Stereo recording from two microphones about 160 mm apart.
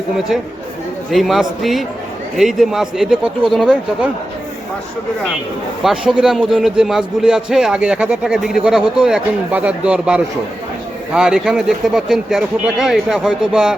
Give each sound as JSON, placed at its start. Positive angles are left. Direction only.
{"t": 1.1, "sound": "a man's voice", "side_deg": 0}
{"t": 5.8, "sound": "a man's voice", "side_deg": -5}